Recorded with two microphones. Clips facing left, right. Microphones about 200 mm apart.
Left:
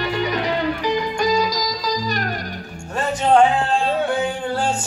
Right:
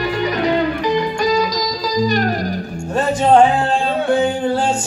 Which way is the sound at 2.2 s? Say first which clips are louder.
Right 8 dB; 35° right (ahead or behind).